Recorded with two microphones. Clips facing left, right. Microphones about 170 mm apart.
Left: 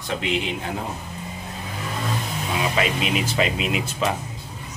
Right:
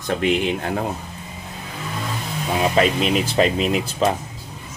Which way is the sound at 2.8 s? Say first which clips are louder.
Right 6 dB; 40° right (ahead or behind).